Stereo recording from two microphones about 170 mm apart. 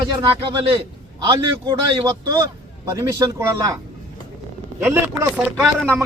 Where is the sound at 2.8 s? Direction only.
20° right (ahead or behind).